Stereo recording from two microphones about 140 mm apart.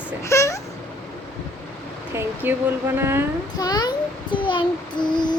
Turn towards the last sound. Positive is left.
turn(degrees=30)  # may be behind; listen again after turning